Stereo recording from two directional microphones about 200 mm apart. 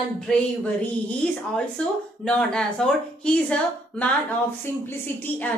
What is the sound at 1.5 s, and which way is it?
Speech, 5° left (ahead or behind).